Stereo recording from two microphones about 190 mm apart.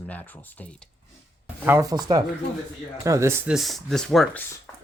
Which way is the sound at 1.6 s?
15° right (ahead or behind).